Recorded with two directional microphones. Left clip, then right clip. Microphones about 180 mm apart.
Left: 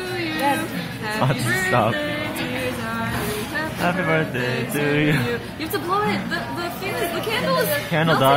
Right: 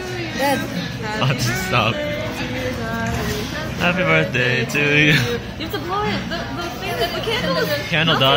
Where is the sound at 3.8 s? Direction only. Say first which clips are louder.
Right 5 dB; centre (ahead or behind).